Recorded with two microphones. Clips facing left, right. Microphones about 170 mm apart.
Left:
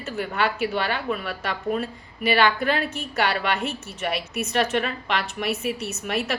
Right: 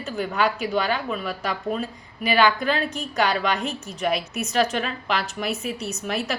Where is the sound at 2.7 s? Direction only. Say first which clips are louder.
Even; 35° right (ahead or behind).